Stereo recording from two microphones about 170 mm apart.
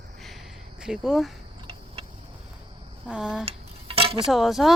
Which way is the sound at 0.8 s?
5° right (ahead or behind).